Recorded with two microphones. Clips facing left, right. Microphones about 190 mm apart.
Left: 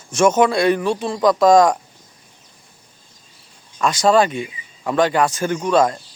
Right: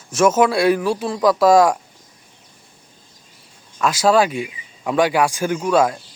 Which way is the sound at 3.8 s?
5° right (ahead or behind).